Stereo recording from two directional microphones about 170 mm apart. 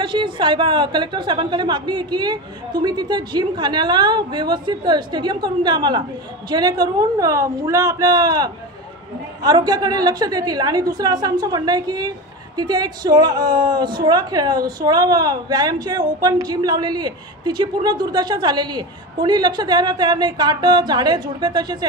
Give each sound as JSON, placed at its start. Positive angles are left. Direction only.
{"t": 0.0, "sound": "a woman's voice", "side_deg": -30}